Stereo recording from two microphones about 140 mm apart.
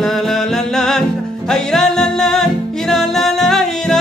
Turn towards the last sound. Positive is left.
turn(degrees=5)  # may be behind; listen again after turning